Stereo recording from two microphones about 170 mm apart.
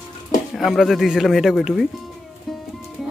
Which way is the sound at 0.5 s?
Centre (ahead or behind).